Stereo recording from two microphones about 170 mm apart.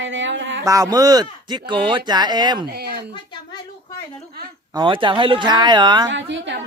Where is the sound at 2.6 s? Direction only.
70° right (ahead or behind).